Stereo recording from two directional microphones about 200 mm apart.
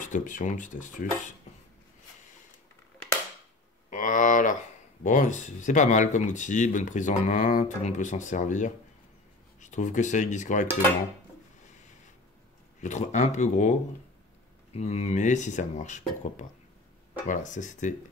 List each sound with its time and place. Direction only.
0.0 s speech: 40° left (ahead or behind)
3.9 s speech: 40° left (ahead or behind)
12.8 s speech: 35° left (ahead or behind)